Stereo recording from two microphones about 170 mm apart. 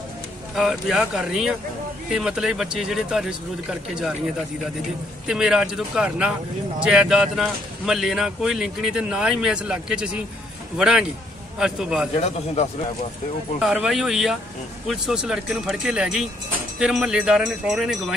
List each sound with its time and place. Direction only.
0.6 s speech: centre (ahead or behind)
5.2 s speech: 5° right (ahead or behind)
12.6 s speech: 40° left (ahead or behind)
13.6 s speech: 5° right (ahead or behind)